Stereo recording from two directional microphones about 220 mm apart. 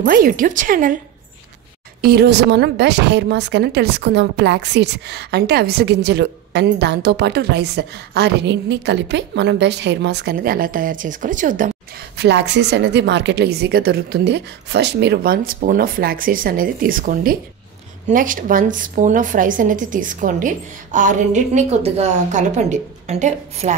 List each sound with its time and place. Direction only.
0.0 s a woman's voice: 40° right (ahead or behind)
2.0 s a woman's voice: 45° right (ahead or behind)
12.2 s a woman's voice: 50° right (ahead or behind); by 23.7 s 30° right (ahead or behind)